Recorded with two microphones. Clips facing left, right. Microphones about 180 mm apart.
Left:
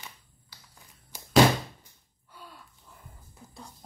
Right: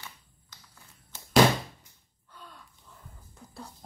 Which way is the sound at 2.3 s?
5° left (ahead or behind).